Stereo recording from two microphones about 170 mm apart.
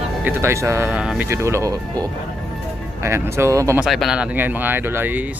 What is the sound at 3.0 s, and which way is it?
Speech, 15° right (ahead or behind).